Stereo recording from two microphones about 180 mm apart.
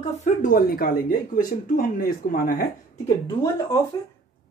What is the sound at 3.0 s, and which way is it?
Speech, 20° left (ahead or behind).